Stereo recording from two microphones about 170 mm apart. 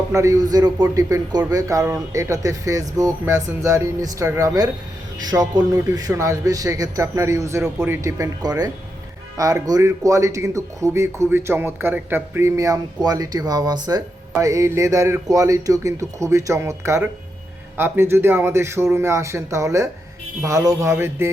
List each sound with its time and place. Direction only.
0.1 s a man's voice: 20° right (ahead or behind)